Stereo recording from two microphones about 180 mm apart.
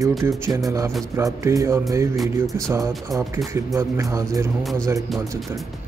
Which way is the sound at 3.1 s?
15° right (ahead or behind).